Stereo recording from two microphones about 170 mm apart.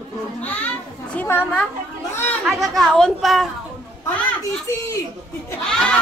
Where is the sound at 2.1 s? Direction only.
10° left (ahead or behind).